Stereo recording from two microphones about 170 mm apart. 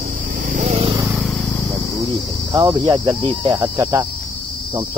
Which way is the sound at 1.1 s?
Centre (ahead or behind).